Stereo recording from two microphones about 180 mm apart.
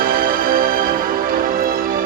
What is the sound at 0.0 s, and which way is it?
Music, 55° right (ahead or behind).